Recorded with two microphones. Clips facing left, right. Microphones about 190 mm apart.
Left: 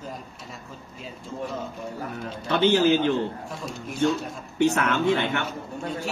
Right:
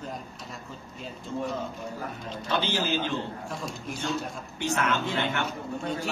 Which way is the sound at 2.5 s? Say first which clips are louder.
Left 9 dB; 60° left (ahead or behind).